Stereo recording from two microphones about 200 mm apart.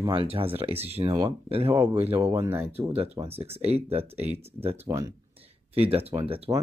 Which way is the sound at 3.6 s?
30° right (ahead or behind).